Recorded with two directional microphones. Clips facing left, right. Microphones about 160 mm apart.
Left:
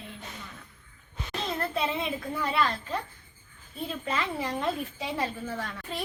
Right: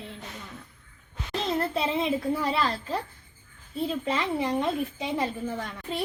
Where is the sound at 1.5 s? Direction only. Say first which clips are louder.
Right 3 dB; 30° right (ahead or behind).